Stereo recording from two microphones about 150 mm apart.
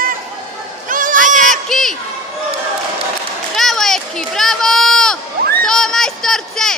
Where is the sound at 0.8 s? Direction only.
60° right (ahead or behind).